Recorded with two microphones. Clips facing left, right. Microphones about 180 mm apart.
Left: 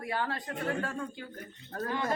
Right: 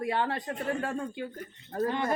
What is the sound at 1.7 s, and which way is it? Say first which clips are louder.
Speech: right 5 dB; 20° right (ahead or behind).